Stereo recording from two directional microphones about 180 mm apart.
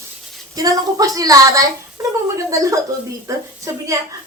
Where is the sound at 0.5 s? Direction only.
20° right (ahead or behind).